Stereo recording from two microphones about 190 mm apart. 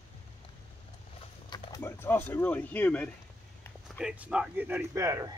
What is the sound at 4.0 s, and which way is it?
Speech, 5° right (ahead or behind).